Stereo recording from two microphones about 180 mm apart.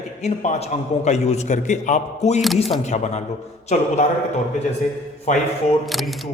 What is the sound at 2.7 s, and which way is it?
A man's voice, 40° left (ahead or behind).